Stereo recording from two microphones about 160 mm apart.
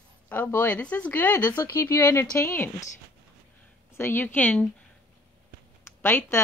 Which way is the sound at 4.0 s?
15° left (ahead or behind).